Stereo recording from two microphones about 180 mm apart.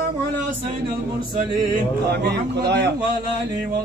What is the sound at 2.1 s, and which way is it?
Speech, 65° right (ahead or behind).